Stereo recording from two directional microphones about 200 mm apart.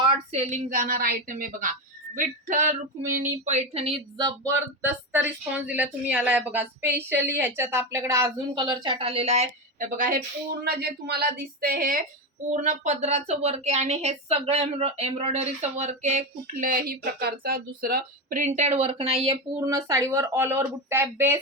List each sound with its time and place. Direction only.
0.0 s a woman's voice: 35° right (ahead or behind)
10.6 s a woman's voice: 50° right (ahead or behind)
12.5 s a woman's voice: 35° right (ahead or behind); by 21.3 s 10° right (ahead or behind)